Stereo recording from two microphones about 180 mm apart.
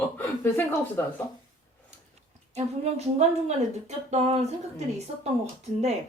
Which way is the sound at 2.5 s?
35° right (ahead or behind).